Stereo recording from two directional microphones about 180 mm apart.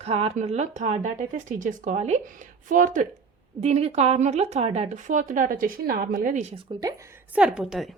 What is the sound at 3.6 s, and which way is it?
Speech, 35° right (ahead or behind).